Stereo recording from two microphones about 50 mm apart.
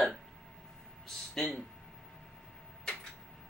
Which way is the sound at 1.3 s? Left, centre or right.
Centre.